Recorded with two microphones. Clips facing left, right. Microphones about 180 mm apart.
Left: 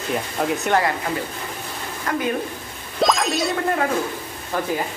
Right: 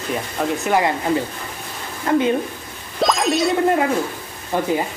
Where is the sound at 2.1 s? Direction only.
25° right (ahead or behind).